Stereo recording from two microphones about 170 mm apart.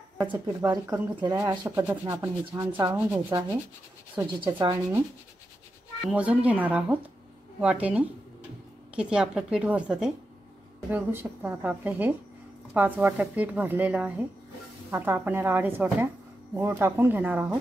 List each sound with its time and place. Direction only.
0.6 s speech: 20° right (ahead or behind)
4.5 s speech: 25° right (ahead or behind)
6.0 s a woman's voice: 10° right (ahead or behind)